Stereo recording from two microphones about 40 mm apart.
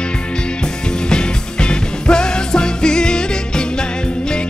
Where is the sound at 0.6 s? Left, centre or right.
Left.